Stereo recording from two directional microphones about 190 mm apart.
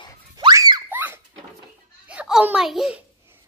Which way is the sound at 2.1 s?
5° right (ahead or behind).